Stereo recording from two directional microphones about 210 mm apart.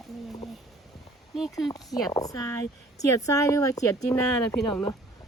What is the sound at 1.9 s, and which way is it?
Speech, 15° left (ahead or behind).